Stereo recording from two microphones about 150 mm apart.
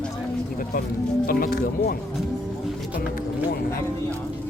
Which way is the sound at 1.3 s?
75° left (ahead or behind).